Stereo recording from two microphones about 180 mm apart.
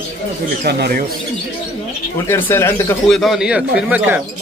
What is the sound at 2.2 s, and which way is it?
Speech, 15° left (ahead or behind).